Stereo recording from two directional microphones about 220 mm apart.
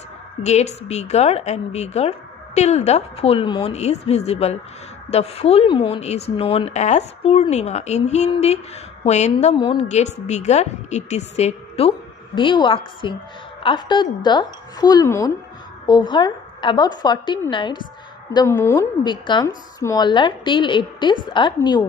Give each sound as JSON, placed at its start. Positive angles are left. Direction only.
{"t": 0.4, "sound": "a woman's voice", "side_deg": 30}